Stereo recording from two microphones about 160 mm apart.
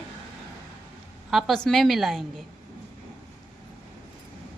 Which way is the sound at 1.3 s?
Centre (ahead or behind).